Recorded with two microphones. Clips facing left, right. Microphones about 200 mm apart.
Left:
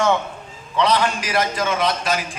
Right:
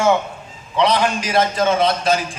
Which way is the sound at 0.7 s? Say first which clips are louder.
Right 2 dB; 15° right (ahead or behind).